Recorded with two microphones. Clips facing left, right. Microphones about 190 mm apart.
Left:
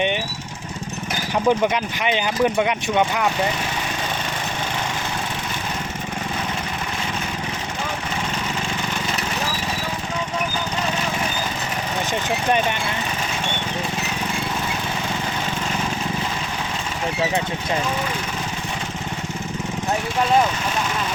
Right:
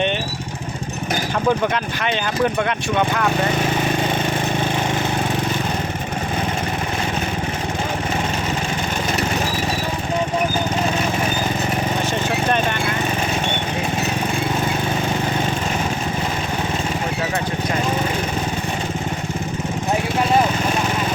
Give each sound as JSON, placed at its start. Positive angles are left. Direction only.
{"t": 1.5, "sound": "speech", "side_deg": 15}